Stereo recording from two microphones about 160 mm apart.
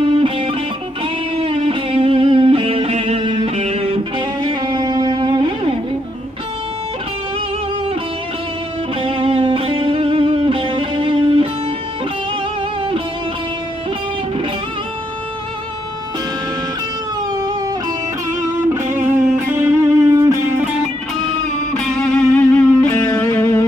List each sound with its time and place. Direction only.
0.0 s music: 35° right (ahead or behind)
9.0 s music: 35° right (ahead or behind)
18.9 s music: 10° right (ahead or behind)
21.7 s music: 5° left (ahead or behind)